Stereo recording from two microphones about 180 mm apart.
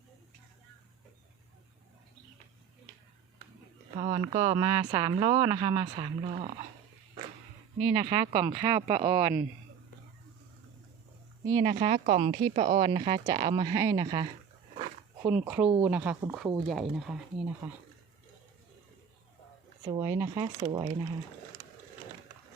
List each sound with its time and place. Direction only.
3.9 s speech: 30° right (ahead or behind)
4.6 s speech: 25° right (ahead or behind)
6.3 s speech: 35° right (ahead or behind)
7.8 s speech: 35° right (ahead or behind)
11.4 s speech: 20° right (ahead or behind)
11.7 s speech: 40° right (ahead or behind)
12.2 s speech: 25° right (ahead or behind)
12.5 s speech: 50° right (ahead or behind)
13.2 s speech: 20° right (ahead or behind)
15.2 s speech: 10° right (ahead or behind)
19.9 s speech: 15° right (ahead or behind)
20.3 s speech: 25° right (ahead or behind)